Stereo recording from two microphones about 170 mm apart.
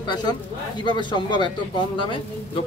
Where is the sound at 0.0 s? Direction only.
25° left (ahead or behind).